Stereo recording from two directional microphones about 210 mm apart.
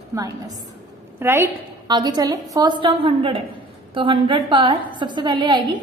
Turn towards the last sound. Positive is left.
turn(degrees=-20)  # may be behind; listen again after turning